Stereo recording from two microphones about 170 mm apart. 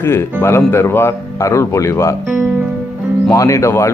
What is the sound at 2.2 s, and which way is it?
Music, 10° right (ahead or behind).